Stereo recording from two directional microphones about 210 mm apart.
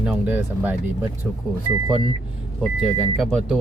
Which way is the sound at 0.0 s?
5° right (ahead or behind).